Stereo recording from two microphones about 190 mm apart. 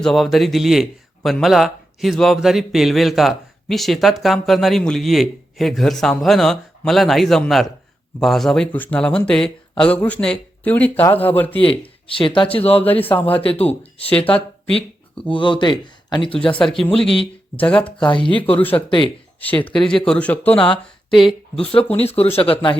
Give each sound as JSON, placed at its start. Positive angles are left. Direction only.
{"t": 0.0, "sound": "speech", "side_deg": 0}
{"t": 12.0, "sound": "speech", "side_deg": 25}
{"t": 12.8, "sound": "speech", "side_deg": 10}
{"t": 13.4, "sound": "speech", "side_deg": 30}
{"t": 15.3, "sound": "speech", "side_deg": 25}
{"t": 16.8, "sound": "speech", "side_deg": 5}
{"t": 17.9, "sound": "speech", "side_deg": 25}
{"t": 18.5, "sound": "speech", "side_deg": 10}
{"t": 18.9, "sound": "speech", "side_deg": 25}
{"t": 19.7, "sound": "speech", "side_deg": 5}
{"t": 22.2, "sound": "speech", "side_deg": 30}